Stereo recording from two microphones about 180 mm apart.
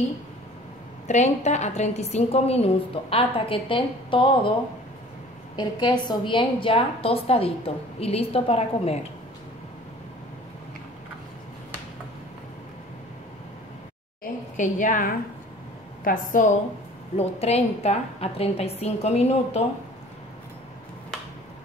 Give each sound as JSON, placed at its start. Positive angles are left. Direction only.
{"t": 1.0, "sound": "a woman's voice", "side_deg": 40}
{"t": 5.6, "sound": "a woman's voice", "side_deg": 25}
{"t": 14.2, "sound": "a sound", "side_deg": 45}
{"t": 16.0, "sound": "a woman's voice", "side_deg": 50}
{"t": 17.2, "sound": "a woman's voice", "side_deg": 35}